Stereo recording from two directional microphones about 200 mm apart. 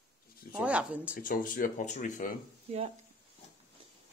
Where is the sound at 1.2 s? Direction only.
45° left (ahead or behind).